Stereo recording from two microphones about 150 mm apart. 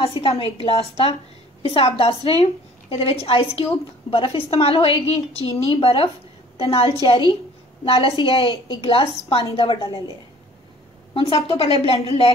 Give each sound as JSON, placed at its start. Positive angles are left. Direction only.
{"t": 0.2, "sound": "a woman's voice", "side_deg": 40}
{"t": 11.4, "sound": "a woman's voice", "side_deg": 40}